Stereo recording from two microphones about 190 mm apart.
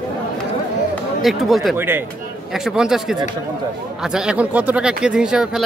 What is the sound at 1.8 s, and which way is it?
Speech, 10° right (ahead or behind).